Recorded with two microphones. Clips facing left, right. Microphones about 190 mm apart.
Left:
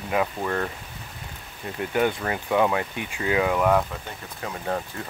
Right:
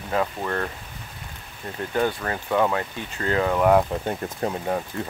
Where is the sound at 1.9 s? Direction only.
15° left (ahead or behind).